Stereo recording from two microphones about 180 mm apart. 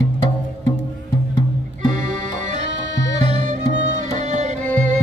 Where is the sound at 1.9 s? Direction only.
40° right (ahead or behind).